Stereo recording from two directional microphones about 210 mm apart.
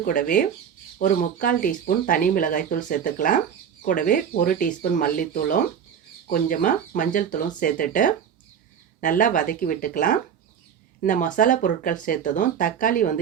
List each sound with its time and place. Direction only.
0.0 s speech: 40° left (ahead or behind)